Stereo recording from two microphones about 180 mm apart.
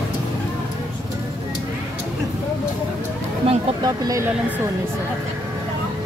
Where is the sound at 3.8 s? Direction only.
20° right (ahead or behind).